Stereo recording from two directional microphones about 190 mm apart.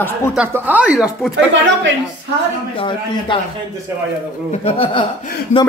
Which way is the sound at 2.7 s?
25° left (ahead or behind).